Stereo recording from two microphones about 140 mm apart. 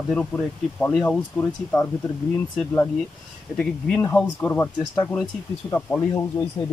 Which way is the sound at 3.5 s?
5° left (ahead or behind).